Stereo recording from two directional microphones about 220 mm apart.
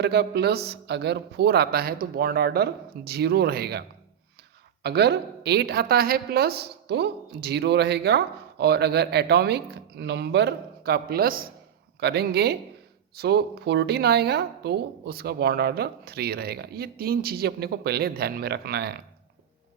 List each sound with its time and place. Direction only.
0.0 s a woman's voice: 50° right (ahead or behind)